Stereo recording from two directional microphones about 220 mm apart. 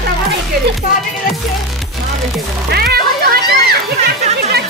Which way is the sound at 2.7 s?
45° right (ahead or behind).